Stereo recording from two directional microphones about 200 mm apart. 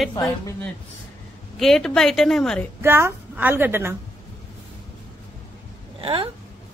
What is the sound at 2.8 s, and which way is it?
A woman's voice, 10° right (ahead or behind).